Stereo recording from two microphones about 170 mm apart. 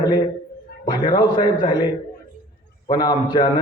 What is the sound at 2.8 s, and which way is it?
Speech, 25° left (ahead or behind).